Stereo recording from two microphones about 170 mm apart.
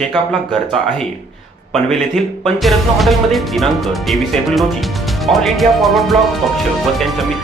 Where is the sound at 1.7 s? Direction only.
Centre (ahead or behind).